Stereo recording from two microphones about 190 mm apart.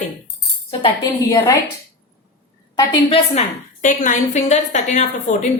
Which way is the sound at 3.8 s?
40° left (ahead or behind).